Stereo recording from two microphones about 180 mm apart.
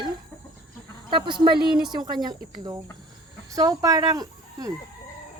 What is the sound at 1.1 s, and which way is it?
Speech, 25° right (ahead or behind).